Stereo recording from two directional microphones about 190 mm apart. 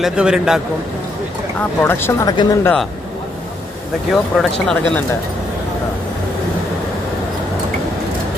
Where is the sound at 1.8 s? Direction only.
10° left (ahead or behind).